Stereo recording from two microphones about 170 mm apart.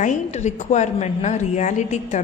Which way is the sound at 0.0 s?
45° left (ahead or behind).